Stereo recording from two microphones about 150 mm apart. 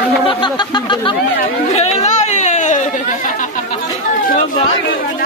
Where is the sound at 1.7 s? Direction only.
45° left (ahead or behind).